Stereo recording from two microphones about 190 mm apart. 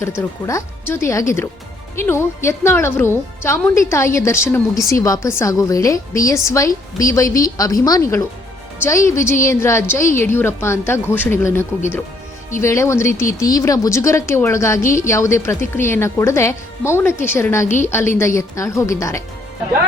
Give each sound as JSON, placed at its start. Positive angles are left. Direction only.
{"t": 0.2, "sound": "speech", "side_deg": 15}
{"t": 17.7, "sound": "a woman's voice", "side_deg": 40}
{"t": 18.2, "sound": "speech", "side_deg": 15}